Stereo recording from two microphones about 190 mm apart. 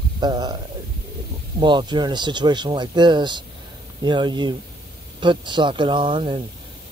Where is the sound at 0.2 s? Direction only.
20° right (ahead or behind).